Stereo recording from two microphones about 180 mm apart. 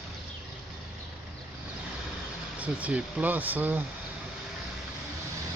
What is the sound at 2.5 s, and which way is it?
Speech, 10° right (ahead or behind).